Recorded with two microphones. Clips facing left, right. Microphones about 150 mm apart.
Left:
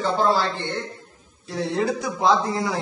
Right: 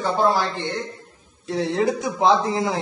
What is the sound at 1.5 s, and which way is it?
A man's voice, 20° right (ahead or behind).